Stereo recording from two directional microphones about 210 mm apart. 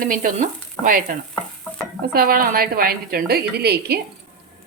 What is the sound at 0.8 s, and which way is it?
Stir, 40° right (ahead or behind).